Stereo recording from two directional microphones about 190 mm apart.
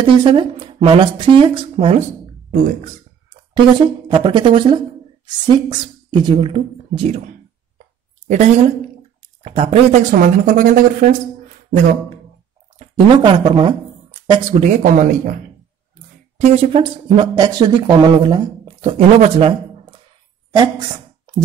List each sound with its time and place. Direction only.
0.0 s speech: 25° right (ahead or behind)
3.5 s a woman's voice: 25° right (ahead or behind); by 11.9 s 45° right (ahead or behind)
12.7 s speech: 25° right (ahead or behind)
14.6 s speech: 40° right (ahead or behind)
16.3 s speech: 35° right (ahead or behind)